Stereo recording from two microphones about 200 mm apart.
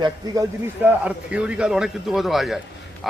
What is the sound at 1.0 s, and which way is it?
A man's voice, 5° right (ahead or behind).